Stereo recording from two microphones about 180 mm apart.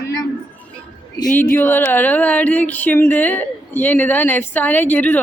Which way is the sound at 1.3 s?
10° left (ahead or behind).